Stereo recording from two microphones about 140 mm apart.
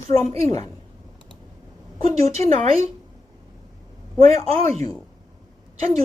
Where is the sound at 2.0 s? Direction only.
50° right (ahead or behind).